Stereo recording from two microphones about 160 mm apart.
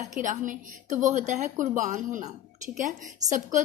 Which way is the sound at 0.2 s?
55° right (ahead or behind).